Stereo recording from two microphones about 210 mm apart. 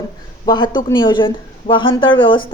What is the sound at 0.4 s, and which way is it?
Speech, 20° left (ahead or behind).